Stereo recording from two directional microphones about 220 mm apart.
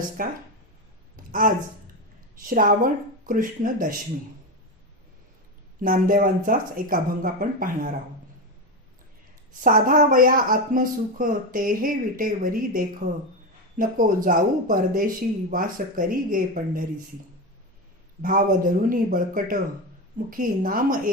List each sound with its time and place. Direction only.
0.2 s speech: 40° right (ahead or behind)
1.1 s a sound: 40° right (ahead or behind)
2.3 s speech: 40° right (ahead or behind)
5.8 s speech: 40° right (ahead or behind)
9.6 s speech: 40° right (ahead or behind)
18.2 s speech: 40° right (ahead or behind)